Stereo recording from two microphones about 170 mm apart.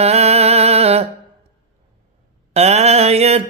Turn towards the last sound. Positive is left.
turn(degrees=-35)  # may be behind; listen again after turning